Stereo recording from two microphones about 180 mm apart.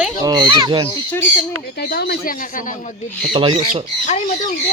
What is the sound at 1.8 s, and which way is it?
Speech, 60° left (ahead or behind).